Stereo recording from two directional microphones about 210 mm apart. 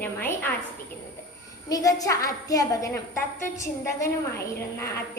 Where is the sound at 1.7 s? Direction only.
15° left (ahead or behind).